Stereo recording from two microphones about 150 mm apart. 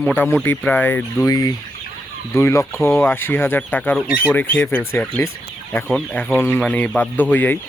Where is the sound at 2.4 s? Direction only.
20° left (ahead or behind).